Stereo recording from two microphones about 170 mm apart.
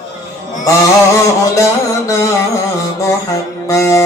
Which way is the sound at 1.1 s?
20° left (ahead or behind).